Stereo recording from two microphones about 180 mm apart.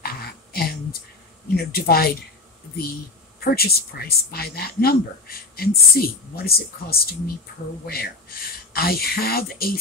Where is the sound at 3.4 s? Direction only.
60° left (ahead or behind).